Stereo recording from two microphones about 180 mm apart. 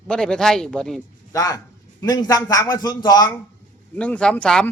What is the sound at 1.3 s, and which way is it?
A man's voice, 20° left (ahead or behind).